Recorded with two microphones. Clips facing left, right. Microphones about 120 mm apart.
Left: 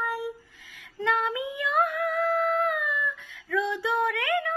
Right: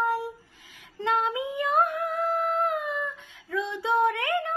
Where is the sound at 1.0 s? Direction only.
20° right (ahead or behind).